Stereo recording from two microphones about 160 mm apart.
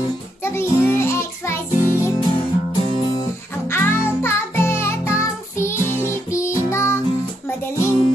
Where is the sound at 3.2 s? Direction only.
15° left (ahead or behind).